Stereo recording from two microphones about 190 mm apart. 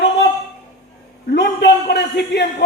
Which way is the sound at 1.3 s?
65° left (ahead or behind).